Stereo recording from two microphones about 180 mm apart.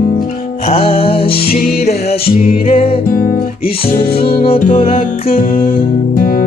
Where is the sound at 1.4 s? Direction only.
50° left (ahead or behind).